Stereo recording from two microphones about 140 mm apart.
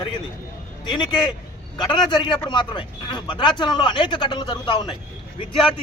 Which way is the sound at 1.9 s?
35° left (ahead or behind).